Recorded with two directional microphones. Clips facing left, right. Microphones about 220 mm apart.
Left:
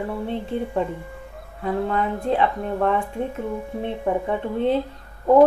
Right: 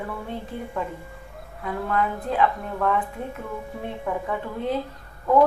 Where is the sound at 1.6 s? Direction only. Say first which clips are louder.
Left 3 dB; 25° left (ahead or behind).